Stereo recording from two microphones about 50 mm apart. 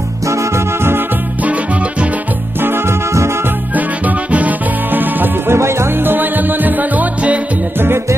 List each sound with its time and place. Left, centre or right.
3.7 s music: right
5.5 s music: right
6.0 s music: right
7.8 s music: right